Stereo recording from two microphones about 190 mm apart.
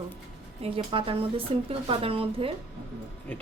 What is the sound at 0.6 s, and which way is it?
A woman's voice, 30° right (ahead or behind).